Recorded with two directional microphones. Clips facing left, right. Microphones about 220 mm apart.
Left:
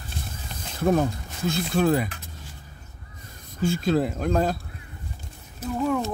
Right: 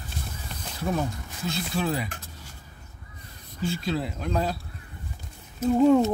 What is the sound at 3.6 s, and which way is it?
Speech, 50° left (ahead or behind).